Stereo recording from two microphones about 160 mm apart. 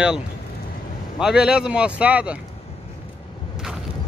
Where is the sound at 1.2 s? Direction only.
5° right (ahead or behind).